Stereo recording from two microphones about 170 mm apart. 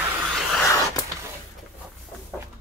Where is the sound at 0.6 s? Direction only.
20° left (ahead or behind).